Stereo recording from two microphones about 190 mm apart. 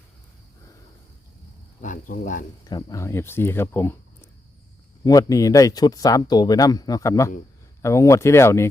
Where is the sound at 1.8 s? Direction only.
45° left (ahead or behind).